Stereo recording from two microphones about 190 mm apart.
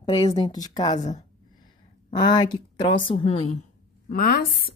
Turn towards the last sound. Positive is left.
turn(degrees=50)  # may be behind; listen again after turning